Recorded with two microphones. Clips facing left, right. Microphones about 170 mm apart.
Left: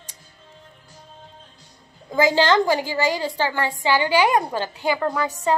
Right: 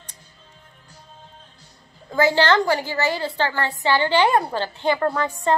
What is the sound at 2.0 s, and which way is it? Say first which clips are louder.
A woman's voice: even; 15° left (ahead or behind).